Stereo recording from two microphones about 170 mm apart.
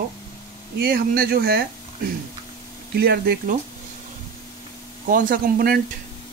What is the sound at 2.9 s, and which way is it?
Speech, 65° right (ahead or behind).